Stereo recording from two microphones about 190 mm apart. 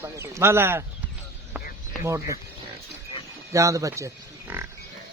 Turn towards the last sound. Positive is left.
turn(degrees=-15)  # may be behind; listen again after turning